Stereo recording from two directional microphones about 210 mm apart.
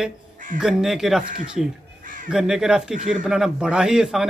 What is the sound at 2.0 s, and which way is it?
Crow, 40° right (ahead or behind).